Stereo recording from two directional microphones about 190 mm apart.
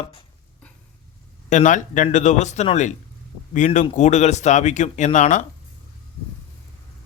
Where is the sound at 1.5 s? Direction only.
40° left (ahead or behind).